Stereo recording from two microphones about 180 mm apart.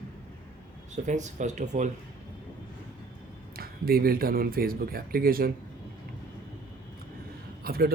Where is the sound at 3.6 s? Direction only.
55° right (ahead or behind).